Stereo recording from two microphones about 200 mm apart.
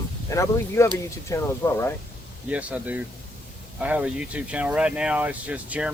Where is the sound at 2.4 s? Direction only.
5° right (ahead or behind).